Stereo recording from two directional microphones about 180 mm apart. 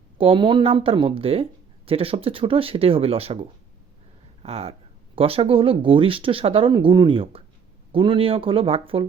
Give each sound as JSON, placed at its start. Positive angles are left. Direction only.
{"t": 0.2, "sound": "speech", "side_deg": -30}
{"t": 4.4, "sound": "speech", "side_deg": -35}